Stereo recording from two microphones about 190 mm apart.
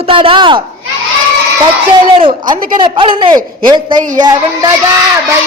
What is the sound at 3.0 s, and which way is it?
A man's voice, 30° right (ahead or behind).